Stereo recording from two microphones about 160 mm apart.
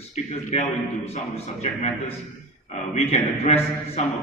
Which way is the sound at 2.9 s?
40° left (ahead or behind).